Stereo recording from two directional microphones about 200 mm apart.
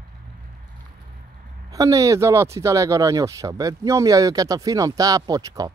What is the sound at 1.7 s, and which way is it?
Speech, 15° right (ahead or behind).